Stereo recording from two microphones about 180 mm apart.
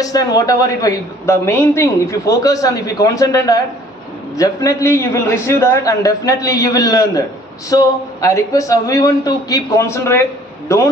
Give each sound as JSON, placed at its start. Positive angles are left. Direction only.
{"t": 0.0, "sound": "a woman's voice", "side_deg": 20}